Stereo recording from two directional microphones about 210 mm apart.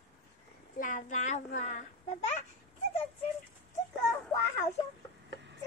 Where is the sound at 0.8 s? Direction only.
35° left (ahead or behind).